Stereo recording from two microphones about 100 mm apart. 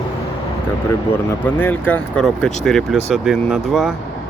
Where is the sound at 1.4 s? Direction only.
15° left (ahead or behind).